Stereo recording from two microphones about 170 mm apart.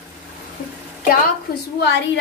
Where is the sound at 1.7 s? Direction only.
90° left.